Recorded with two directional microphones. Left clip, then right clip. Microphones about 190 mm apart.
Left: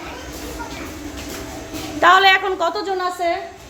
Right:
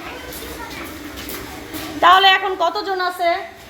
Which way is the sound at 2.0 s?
15° left (ahead or behind).